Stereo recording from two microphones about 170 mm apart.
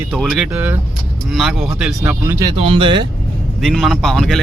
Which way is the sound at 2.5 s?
30° right (ahead or behind).